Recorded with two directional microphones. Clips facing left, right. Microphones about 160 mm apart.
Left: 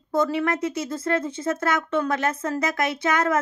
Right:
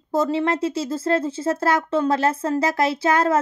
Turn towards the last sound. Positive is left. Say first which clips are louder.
# right 3 dB
turn(degrees=-30)  # may be behind; listen again after turning